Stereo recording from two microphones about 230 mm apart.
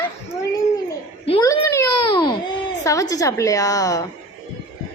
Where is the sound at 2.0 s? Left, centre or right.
Left.